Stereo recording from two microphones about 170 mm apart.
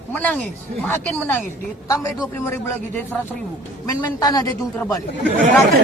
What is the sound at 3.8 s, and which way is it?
Speech, 20° left (ahead or behind).